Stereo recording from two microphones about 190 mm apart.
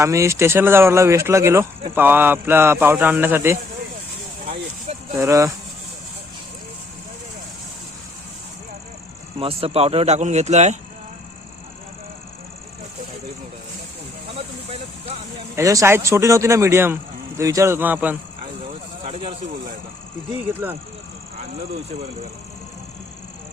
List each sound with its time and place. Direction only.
0.0 s speech: 15° right (ahead or behind)
5.1 s speech: 15° right (ahead or behind)
9.4 s speech: 30° right (ahead or behind)
14.3 s vehicle: 30° right (ahead or behind)
15.5 s speech: 15° right (ahead or behind)
19.0 s speech: 30° right (ahead or behind)
20.5 s speech: 10° right (ahead or behind)